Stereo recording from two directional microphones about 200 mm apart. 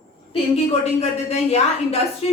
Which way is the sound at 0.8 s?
30° left (ahead or behind).